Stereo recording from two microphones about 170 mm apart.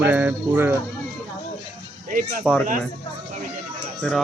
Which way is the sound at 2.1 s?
50° right (ahead or behind).